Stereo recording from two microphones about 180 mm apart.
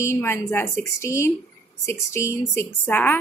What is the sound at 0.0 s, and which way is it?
A woman's voice, 15° left (ahead or behind).